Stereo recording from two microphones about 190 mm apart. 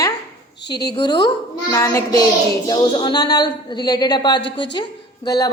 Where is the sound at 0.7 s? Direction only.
60° left (ahead or behind).